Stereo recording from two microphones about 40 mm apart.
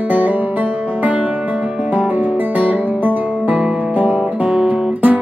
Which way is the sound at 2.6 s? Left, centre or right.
Right.